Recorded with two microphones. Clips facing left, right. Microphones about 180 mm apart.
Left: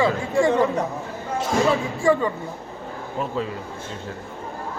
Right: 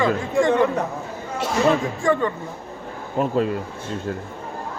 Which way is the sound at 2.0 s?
10° left (ahead or behind).